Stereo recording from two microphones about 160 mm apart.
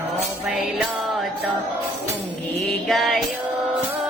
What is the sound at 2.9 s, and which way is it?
Music, centre (ahead or behind).